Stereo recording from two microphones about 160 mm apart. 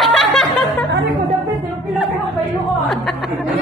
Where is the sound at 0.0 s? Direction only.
Centre (ahead or behind).